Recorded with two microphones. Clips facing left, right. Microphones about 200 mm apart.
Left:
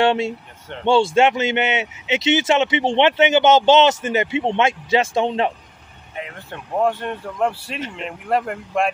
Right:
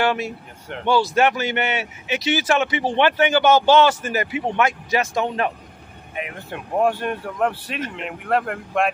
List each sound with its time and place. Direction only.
0.0 s a man's voice: 25° left (ahead or behind)
6.1 s speech: 15° right (ahead or behind)